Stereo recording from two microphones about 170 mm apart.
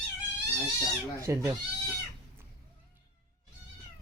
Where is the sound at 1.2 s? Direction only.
15° right (ahead or behind).